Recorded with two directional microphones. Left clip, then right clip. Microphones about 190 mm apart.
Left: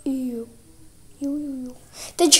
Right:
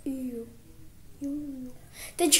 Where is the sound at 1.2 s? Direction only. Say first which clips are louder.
Left 7 dB; 15° left (ahead or behind).